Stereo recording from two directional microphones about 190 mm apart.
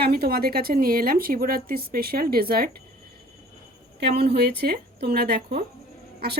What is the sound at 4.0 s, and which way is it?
Speech, 60° right (ahead or behind).